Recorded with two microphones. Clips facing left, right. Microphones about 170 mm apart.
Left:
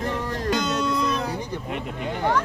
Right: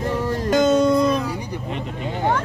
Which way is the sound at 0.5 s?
50° right (ahead or behind).